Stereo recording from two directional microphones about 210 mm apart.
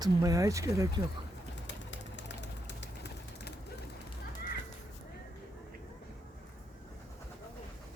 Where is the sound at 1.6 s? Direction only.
60° left (ahead or behind).